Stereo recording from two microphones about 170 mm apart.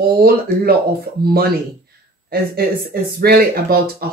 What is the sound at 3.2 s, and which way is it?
Speech, 65° right (ahead or behind).